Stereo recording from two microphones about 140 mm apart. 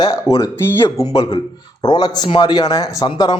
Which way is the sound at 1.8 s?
30° left (ahead or behind).